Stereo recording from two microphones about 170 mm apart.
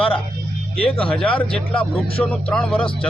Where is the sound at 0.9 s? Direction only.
5° left (ahead or behind).